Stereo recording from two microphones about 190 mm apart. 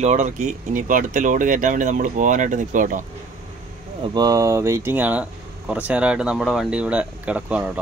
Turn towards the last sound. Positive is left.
turn(degrees=-5)  # may be behind; listen again after turning